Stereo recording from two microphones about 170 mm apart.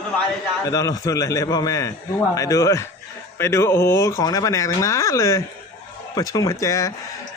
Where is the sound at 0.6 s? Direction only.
20° left (ahead or behind).